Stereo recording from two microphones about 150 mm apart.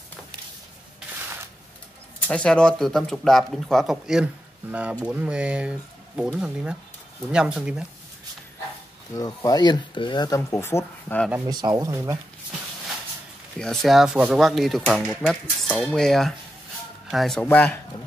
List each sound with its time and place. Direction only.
2.2 s speech: 5° left (ahead or behind)
9.1 s speech: 25° left (ahead or behind)
11.4 s speech: 25° right (ahead or behind)
13.6 s speech: centre (ahead or behind)